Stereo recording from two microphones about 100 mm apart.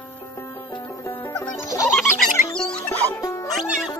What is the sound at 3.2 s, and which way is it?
Music, 30° left (ahead or behind).